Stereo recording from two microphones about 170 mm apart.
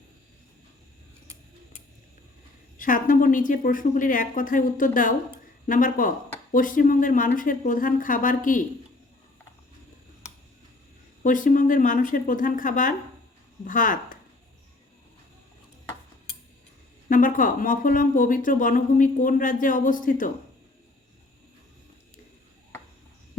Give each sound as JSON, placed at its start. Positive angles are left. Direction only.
{"t": 2.7, "sound": "speech", "side_deg": 55}
{"t": 11.2, "sound": "speech", "side_deg": 50}
{"t": 17.1, "sound": "speech", "side_deg": 50}